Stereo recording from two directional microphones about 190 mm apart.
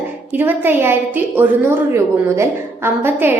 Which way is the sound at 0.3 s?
10° right (ahead or behind).